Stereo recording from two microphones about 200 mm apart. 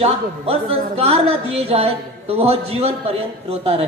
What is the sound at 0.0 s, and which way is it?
A woman's voice, 30° right (ahead or behind).